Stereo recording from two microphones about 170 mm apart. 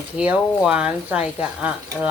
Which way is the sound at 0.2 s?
5° right (ahead or behind).